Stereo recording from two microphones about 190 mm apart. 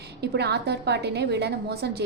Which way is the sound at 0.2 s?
60° right (ahead or behind).